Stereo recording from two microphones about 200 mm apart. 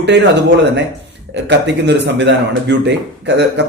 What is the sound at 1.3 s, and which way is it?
Speech, 60° right (ahead or behind).